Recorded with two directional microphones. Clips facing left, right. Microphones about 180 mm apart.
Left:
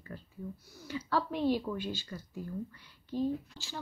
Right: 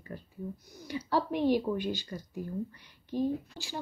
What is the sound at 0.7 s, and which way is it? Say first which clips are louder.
Speech: right 2 dB; 15° right (ahead or behind).